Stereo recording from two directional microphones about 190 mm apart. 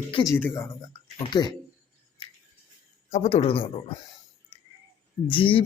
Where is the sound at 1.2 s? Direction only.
25° left (ahead or behind).